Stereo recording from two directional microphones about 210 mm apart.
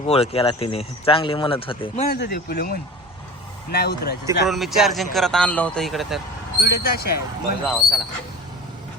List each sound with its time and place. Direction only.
0.0 s speech: 30° left (ahead or behind)
2.0 s speech: 50° left (ahead or behind)
4.4 s speech: centre (ahead or behind)
6.6 s speech: 45° left (ahead or behind)
7.7 s speech: centre (ahead or behind)